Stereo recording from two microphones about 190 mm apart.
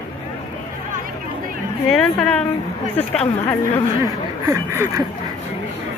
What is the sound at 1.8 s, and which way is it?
A woman's voice, 5° left (ahead or behind).